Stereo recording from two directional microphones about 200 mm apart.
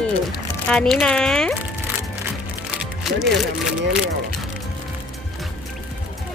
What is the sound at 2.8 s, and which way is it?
Speech, centre (ahead or behind).